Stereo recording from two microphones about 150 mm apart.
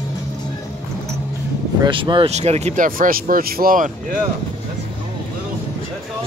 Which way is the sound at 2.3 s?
45° right (ahead or behind).